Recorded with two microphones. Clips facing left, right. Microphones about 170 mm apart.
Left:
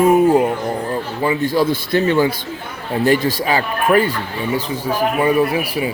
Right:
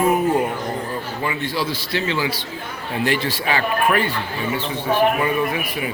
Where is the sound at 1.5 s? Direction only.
50° left (ahead or behind); by 5.9 s 30° left (ahead or behind).